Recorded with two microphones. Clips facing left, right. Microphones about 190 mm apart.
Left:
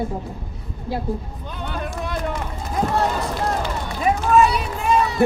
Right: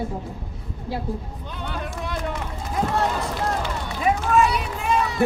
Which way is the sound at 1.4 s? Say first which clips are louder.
Left 3 dB; 45° left (ahead or behind).